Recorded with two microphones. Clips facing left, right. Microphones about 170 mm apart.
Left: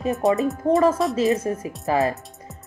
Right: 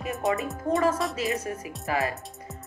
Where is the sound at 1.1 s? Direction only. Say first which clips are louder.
Left 8 dB; 25° left (ahead or behind).